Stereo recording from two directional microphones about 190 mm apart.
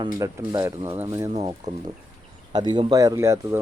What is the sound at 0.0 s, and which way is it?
Speech, 20° right (ahead or behind).